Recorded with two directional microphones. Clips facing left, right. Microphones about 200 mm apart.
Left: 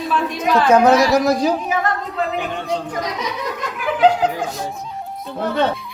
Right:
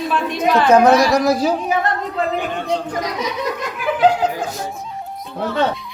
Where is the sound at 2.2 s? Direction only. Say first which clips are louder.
Right 2 dB; centre (ahead or behind).